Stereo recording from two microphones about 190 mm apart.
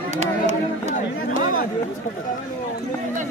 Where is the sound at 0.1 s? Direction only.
35° right (ahead or behind).